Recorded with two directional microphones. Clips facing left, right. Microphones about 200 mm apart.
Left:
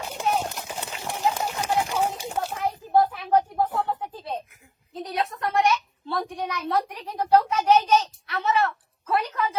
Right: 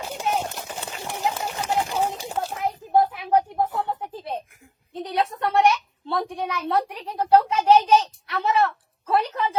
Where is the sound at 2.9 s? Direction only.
20° right (ahead or behind).